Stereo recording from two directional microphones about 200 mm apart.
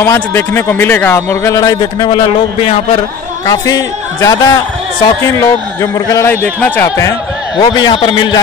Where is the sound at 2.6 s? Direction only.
30° left (ahead or behind).